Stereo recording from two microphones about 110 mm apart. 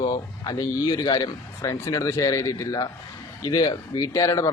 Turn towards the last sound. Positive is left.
turn(degrees=30)  # may be behind; listen again after turning